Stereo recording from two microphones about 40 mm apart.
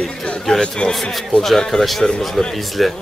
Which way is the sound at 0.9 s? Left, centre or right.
Centre.